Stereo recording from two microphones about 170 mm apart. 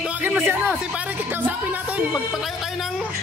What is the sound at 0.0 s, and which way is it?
Speech, 5° right (ahead or behind).